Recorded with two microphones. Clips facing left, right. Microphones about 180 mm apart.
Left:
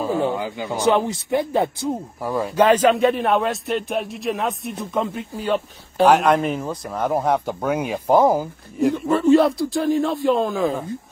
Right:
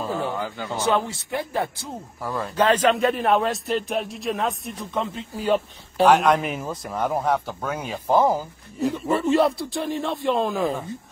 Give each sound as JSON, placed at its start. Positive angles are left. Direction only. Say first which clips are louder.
{"t": 0.0, "sound": "a man's voice", "louder": "left 5 dB", "side_deg": 15}
{"t": 4.9, "sound": "a man's voice", "louder": "left 4 dB", "side_deg": 15}
{"t": 6.0, "sound": "a man's voice", "louder": "left 2 dB", "side_deg": 5}
{"t": 7.2, "sound": "a man's voice", "louder": "left 3 dB", "side_deg": 15}
{"t": 8.9, "sound": "a man's voice", "louder": "left 5 dB", "side_deg": 0}